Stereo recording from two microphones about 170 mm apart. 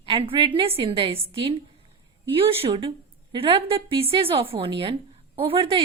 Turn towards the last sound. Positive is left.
turn(degrees=-35)  # may be behind; listen again after turning